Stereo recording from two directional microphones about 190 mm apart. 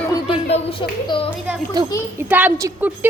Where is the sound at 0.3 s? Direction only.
30° left (ahead or behind).